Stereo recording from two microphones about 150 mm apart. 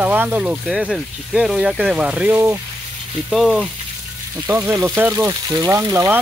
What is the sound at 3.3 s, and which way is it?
Speech, 5° right (ahead or behind).